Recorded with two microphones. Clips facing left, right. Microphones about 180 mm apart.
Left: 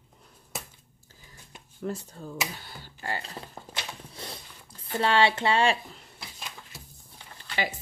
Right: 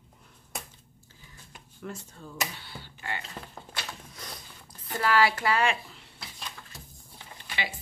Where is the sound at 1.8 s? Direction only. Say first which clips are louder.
Left 6 dB; 35° left (ahead or behind).